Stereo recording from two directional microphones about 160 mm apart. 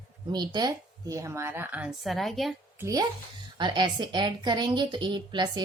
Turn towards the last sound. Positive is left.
turn(degrees=-30)  # may be behind; listen again after turning